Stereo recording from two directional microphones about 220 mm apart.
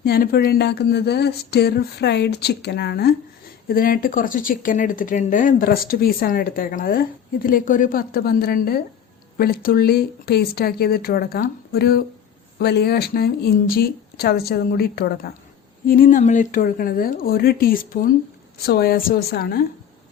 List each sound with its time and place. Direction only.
0.0 s speech: 45° left (ahead or behind)